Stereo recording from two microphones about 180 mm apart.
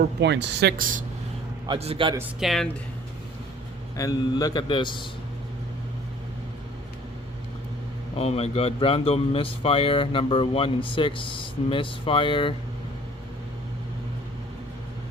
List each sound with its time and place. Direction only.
0.0 s speech: 70° right (ahead or behind)
0.8 s speech: 50° right (ahead or behind)
1.6 s a man's voice: 30° right (ahead or behind)
2.4 s speech: centre (ahead or behind)
3.9 s speech: 20° left (ahead or behind)
8.1 s speech: 35° left (ahead or behind)